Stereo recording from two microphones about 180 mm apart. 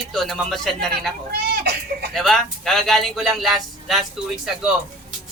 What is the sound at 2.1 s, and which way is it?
Speech, centre (ahead or behind).